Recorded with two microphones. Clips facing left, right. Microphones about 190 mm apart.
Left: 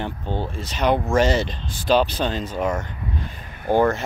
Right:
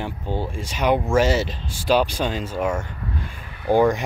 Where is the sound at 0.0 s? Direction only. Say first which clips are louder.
Even; 10° right (ahead or behind).